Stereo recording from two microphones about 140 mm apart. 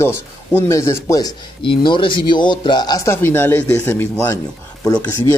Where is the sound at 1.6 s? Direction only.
35° left (ahead or behind).